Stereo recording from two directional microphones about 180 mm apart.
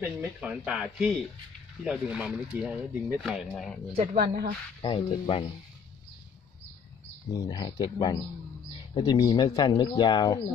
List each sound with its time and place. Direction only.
0.0 s speech: 5° right (ahead or behind)
3.9 s speech: 35° right (ahead or behind)
4.8 s speech: 30° left (ahead or behind)
7.3 s speech: 25° left (ahead or behind)